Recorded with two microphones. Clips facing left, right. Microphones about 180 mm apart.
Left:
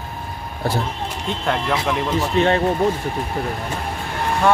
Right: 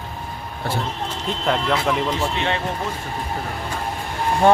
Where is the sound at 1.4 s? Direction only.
Centre (ahead or behind).